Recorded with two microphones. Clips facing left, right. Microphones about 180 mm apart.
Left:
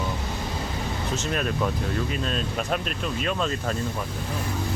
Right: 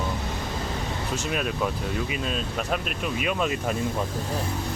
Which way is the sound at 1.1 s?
10° right (ahead or behind).